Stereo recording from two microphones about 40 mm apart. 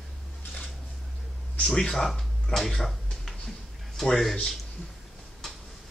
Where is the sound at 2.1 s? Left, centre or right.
Centre.